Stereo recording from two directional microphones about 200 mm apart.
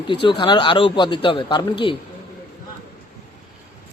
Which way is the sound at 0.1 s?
25° left (ahead or behind).